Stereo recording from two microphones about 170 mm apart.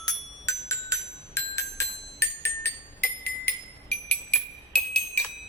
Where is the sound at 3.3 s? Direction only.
75° left (ahead or behind).